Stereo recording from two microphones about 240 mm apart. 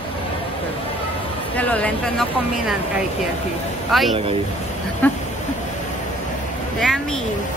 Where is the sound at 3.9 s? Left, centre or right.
Centre.